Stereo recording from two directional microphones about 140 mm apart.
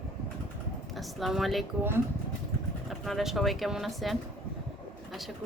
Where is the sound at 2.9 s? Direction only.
Centre (ahead or behind).